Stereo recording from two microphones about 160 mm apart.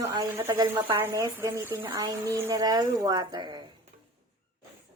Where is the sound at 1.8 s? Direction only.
25° right (ahead or behind).